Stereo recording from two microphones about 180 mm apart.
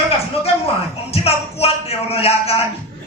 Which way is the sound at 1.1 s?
35° left (ahead or behind).